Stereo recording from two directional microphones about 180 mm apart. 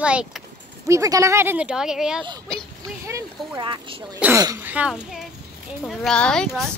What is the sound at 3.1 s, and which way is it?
Speech, 25° right (ahead or behind).